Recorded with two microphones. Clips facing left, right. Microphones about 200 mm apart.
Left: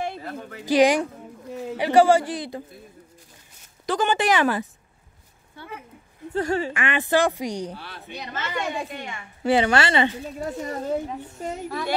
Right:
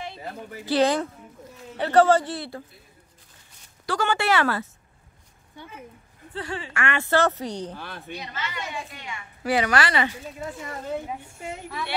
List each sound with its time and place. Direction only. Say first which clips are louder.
0.7 s speech: left 3 dB; 15° left (ahead or behind)
3.8 s speech: left 3 dB; 20° left (ahead or behind)
6.3 s a woman's voice: left 9 dB; 45° left (ahead or behind)
6.7 s speech: left 2 dB; 15° left (ahead or behind)
7.7 s speech: right 1 dB; 50° right (ahead or behind)
8.3 s a woman's voice: left 8 dB; 50° left (ahead or behind)
9.4 s a woman's voice: left 3 dB; 25° left (ahead or behind)
10.4 s a woman's voice: left 5 dB; 40° left (ahead or behind)
11.1 s a woman's voice: left 2 dB; 10° right (ahead or behind)
11.4 s a woman's voice: left 5 dB; 40° left (ahead or behind)